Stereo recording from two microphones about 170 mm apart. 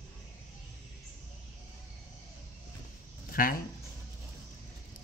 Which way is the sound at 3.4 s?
55° left (ahead or behind).